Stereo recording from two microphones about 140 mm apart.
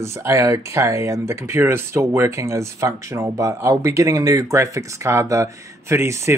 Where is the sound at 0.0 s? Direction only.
20° right (ahead or behind).